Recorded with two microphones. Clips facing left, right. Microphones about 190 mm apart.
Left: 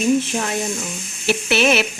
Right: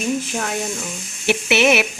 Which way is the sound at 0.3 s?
5° left (ahead or behind).